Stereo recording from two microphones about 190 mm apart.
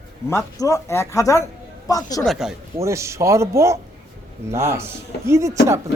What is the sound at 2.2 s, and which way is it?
Speech, centre (ahead or behind).